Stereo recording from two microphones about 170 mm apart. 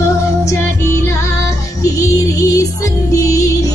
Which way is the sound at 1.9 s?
20° left (ahead or behind).